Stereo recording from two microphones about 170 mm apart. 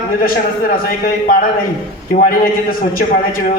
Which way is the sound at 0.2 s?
55° left (ahead or behind).